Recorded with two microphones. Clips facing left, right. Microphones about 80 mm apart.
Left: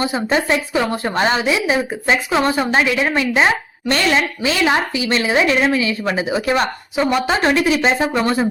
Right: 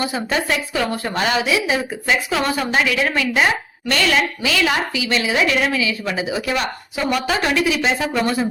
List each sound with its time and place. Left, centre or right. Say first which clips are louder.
0.0 s a woman's voice: left 3 dB; left